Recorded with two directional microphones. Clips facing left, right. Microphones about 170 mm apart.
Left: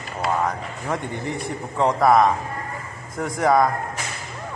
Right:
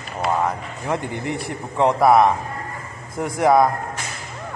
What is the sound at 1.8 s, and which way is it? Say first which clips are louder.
A man's voice: right 2 dB; 15° right (ahead or behind).